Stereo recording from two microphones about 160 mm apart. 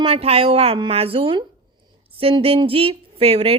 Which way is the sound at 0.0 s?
40° right (ahead or behind).